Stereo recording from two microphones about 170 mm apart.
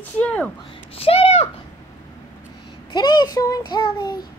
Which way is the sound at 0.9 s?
35° left (ahead or behind).